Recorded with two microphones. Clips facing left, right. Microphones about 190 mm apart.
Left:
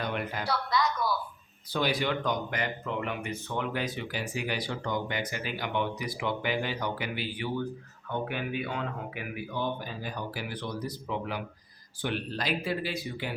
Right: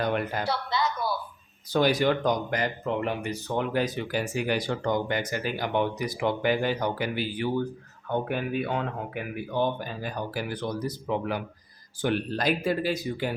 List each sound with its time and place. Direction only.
0.0 s a woman's voice: 45° right (ahead or behind)
0.4 s a sound: 25° right (ahead or behind)
1.7 s speech: 45° right (ahead or behind)